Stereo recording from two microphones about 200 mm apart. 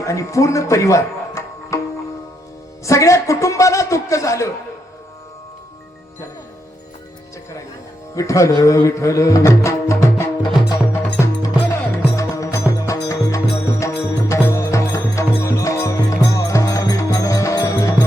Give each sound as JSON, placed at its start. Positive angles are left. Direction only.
{"t": 0.0, "sound": "speech", "side_deg": 15}
{"t": 2.8, "sound": "a man's voice", "side_deg": 15}
{"t": 8.1, "sound": "speech", "side_deg": 15}
{"t": 11.4, "sound": "music", "side_deg": 15}